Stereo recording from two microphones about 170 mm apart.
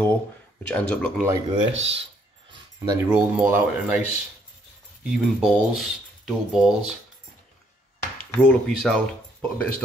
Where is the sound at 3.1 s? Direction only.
10° right (ahead or behind).